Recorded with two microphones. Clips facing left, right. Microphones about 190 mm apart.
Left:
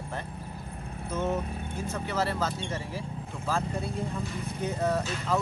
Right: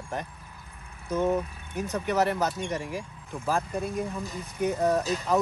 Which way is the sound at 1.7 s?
15° right (ahead or behind).